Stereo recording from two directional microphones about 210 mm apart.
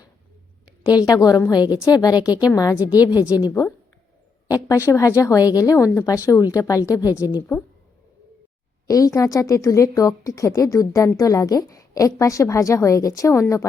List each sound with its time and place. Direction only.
0.9 s a woman's voice: 20° left (ahead or behind)
4.4 s a woman's voice: 15° left (ahead or behind)
8.9 s speech: 15° left (ahead or behind)